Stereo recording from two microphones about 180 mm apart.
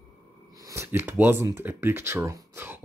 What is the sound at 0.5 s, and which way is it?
Speech, 15° right (ahead or behind).